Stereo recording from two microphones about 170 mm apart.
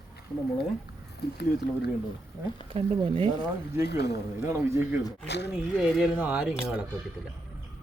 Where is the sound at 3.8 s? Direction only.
75° left (ahead or behind).